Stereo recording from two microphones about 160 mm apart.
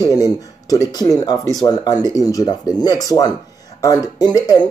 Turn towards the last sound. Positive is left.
turn(degrees=25)  # may be behind; listen again after turning